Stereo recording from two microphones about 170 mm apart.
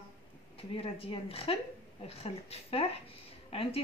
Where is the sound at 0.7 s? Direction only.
30° left (ahead or behind).